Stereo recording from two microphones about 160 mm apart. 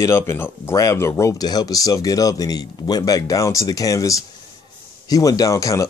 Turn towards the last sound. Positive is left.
turn(degrees=20)  # may be behind; listen again after turning